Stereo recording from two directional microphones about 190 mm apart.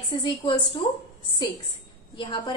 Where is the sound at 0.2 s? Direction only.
25° left (ahead or behind).